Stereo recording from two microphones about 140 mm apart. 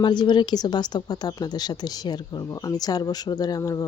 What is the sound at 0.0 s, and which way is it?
A woman's voice, 30° left (ahead or behind).